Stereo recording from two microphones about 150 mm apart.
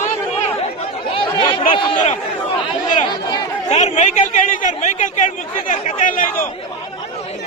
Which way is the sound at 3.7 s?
50° left (ahead or behind).